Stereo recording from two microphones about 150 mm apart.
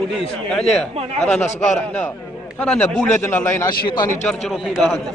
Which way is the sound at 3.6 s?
30° left (ahead or behind).